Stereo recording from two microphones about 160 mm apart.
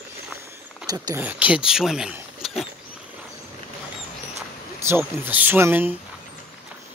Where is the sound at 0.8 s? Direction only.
20° right (ahead or behind).